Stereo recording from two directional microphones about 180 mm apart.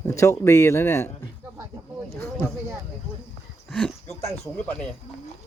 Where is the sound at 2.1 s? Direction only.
15° left (ahead or behind).